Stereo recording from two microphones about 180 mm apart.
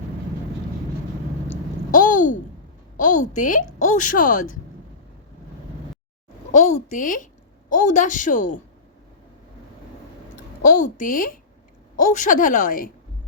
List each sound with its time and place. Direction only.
1.9 s a sound: 45° left (ahead or behind)
3.0 s a woman's voice: 45° left (ahead or behind)
6.5 s a woman's voice: 40° left (ahead or behind)
10.6 s a woman's voice: 50° left (ahead or behind)